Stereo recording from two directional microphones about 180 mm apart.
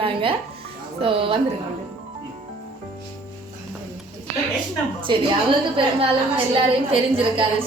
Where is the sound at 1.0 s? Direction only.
30° right (ahead or behind).